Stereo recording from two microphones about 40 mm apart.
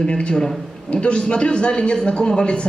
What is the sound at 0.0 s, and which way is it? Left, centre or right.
Speech, left.